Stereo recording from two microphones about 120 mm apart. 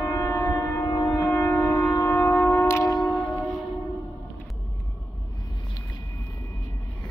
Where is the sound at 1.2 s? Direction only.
15° left (ahead or behind).